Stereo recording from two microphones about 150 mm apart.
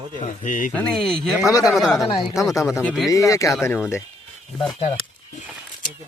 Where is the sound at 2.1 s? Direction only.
35° left (ahead or behind).